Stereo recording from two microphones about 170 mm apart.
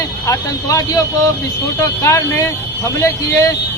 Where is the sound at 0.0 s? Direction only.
20° left (ahead or behind).